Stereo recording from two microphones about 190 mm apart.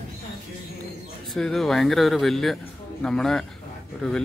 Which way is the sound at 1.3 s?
Centre (ahead or behind).